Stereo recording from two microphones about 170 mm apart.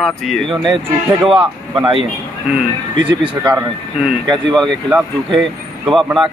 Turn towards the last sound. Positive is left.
turn(degrees=0)  # may be behind; listen again after turning